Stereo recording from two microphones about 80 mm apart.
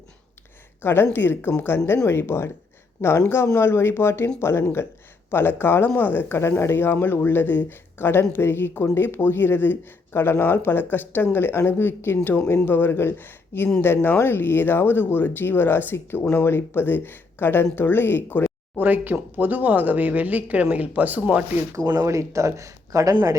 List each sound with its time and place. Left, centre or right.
0.8 s speech: left
18.8 s speech: right
21.9 s speech: right